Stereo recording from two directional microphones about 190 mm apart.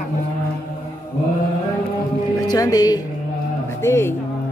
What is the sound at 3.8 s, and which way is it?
Speech, 15° left (ahead or behind).